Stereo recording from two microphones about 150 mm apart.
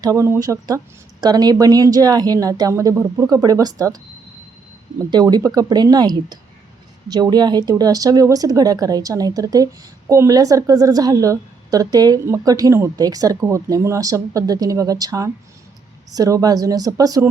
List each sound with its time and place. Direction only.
0.0 s a woman's voice: 20° right (ahead or behind)
5.1 s a woman's voice: 25° right (ahead or behind)